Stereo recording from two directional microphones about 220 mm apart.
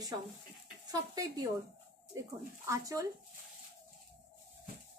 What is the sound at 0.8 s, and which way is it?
A woman's voice, 15° right (ahead or behind).